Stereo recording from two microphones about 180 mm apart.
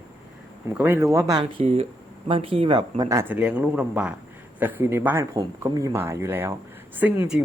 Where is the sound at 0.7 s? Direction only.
10° right (ahead or behind).